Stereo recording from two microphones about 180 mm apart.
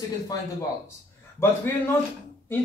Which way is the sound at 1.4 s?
15° left (ahead or behind).